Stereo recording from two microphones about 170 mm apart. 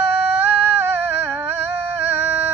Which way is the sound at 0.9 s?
10° right (ahead or behind).